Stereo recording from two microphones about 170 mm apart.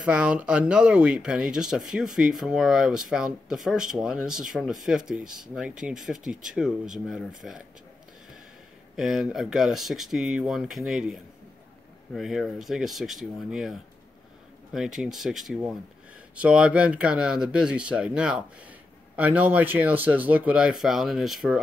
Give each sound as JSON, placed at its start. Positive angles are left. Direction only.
{"t": 0.0, "sound": "speech", "side_deg": -5}
{"t": 8.9, "sound": "speech", "side_deg": -5}